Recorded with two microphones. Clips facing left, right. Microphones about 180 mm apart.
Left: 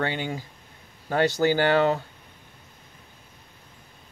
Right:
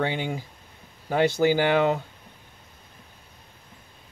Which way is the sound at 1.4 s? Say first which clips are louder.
Left 1 dB; 15° right (ahead or behind).